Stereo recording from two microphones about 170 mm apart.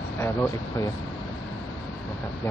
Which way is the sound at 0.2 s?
15° left (ahead or behind).